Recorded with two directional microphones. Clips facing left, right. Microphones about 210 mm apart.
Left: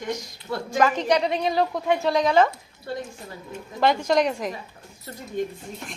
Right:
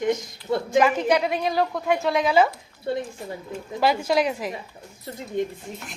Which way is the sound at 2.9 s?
20° right (ahead or behind).